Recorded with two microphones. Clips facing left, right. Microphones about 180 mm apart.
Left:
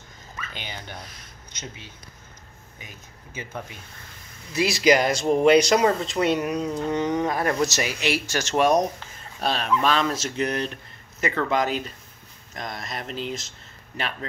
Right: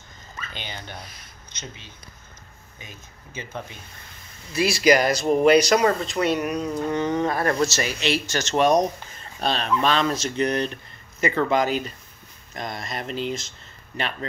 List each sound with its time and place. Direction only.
0.6 s speech: 10° left (ahead or behind)